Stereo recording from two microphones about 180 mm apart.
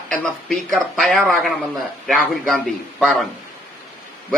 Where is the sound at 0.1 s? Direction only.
Centre (ahead or behind).